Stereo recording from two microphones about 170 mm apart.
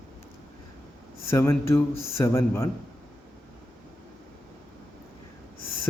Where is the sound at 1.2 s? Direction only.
15° left (ahead or behind).